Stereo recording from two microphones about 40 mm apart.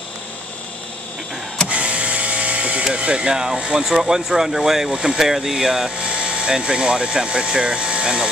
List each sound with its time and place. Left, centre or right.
1.7 s speech: right; by 5.9 s centre
5.9 s speech: right